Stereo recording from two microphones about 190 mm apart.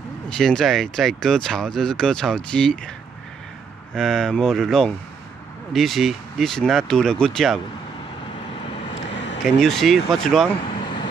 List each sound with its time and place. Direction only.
0.3 s speech: centre (ahead or behind)
3.9 s speech: centre (ahead or behind)
9.1 s a sound: 65° left (ahead or behind)
9.6 s speech: centre (ahead or behind)
10.8 s vehicle: 25° left (ahead or behind)